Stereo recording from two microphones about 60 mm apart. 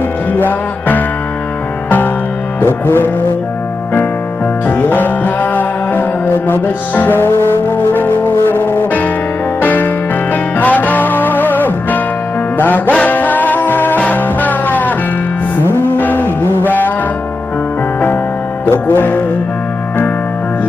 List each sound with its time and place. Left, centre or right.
0.3 s music: left
2.6 s music: left
4.6 s music: left
18.7 s music: left